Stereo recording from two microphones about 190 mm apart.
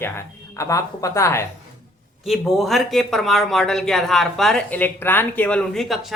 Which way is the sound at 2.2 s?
Centre (ahead or behind).